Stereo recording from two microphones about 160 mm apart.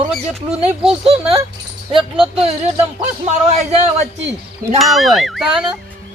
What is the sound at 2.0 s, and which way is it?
Speech, 30° right (ahead or behind).